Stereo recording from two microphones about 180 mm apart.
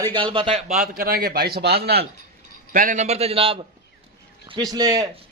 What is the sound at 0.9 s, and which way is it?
Speech, 55° right (ahead or behind).